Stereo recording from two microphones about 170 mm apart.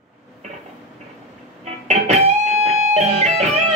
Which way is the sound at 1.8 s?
40° right (ahead or behind).